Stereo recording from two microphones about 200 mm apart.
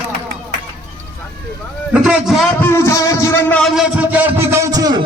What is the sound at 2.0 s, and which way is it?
Speech, 5° right (ahead or behind).